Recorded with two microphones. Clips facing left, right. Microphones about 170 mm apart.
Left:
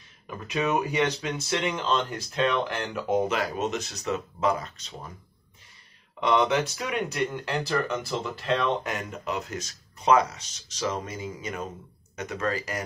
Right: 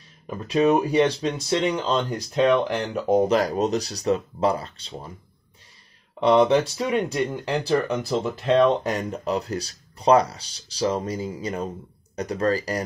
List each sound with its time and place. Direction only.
0.5 s speech: 30° right (ahead or behind)
2.1 s speech: 20° right (ahead or behind)
3.1 s speech: 35° right (ahead or behind)
6.1 s speech: 30° right (ahead or behind)